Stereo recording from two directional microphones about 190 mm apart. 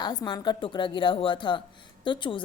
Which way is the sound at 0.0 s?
25° left (ahead or behind).